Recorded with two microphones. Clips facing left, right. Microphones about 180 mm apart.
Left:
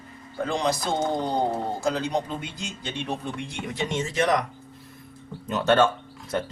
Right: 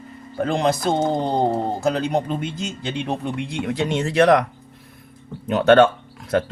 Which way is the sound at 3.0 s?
65° right (ahead or behind).